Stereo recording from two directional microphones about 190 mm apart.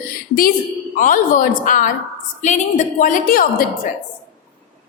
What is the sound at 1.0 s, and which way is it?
A woman's voice, 45° left (ahead or behind).